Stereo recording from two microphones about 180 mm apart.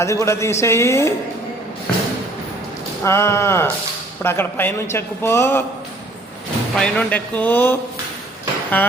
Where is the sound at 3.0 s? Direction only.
15° left (ahead or behind).